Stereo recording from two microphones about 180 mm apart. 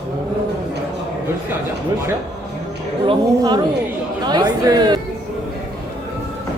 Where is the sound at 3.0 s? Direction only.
25° right (ahead or behind).